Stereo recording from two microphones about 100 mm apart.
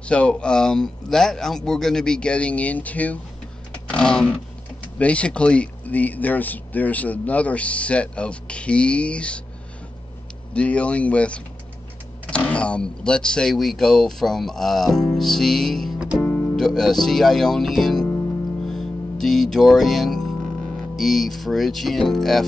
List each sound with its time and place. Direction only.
0.0 s speech: 10° left (ahead or behind)
3.8 s a sound: 10° left (ahead or behind)
4.9 s speech: 10° left (ahead or behind)
10.5 s speech: 10° left (ahead or behind)
16.2 s music: 25° left (ahead or behind)
16.5 s speech: 5° left (ahead or behind)
18.7 s music: 5° left (ahead or behind)
20.9 s speech: centre (ahead or behind)